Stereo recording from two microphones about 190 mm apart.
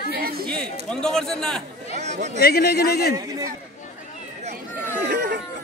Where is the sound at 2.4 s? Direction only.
55° left (ahead or behind).